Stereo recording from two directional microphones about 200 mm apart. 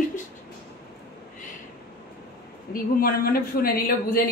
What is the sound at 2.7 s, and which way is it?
A woman's voice, 45° left (ahead or behind).